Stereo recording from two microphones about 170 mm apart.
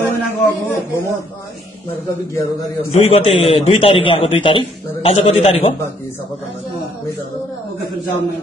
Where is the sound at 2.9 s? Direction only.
40° left (ahead or behind).